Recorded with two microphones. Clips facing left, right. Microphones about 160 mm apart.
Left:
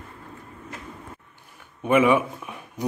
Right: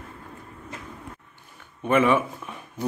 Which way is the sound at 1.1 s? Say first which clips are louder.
Left 1 dB; 10° left (ahead or behind).